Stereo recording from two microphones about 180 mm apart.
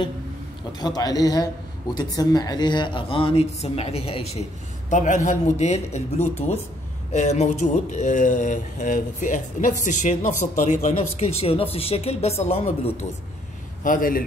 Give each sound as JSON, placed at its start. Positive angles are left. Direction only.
{"t": 0.7, "sound": "a man's voice", "side_deg": 20}
{"t": 13.8, "sound": "speech", "side_deg": 50}